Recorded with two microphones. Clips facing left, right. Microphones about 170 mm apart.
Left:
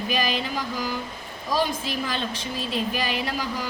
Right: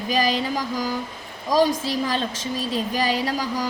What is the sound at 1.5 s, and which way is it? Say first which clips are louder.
Speech: right 6 dB; 40° right (ahead or behind).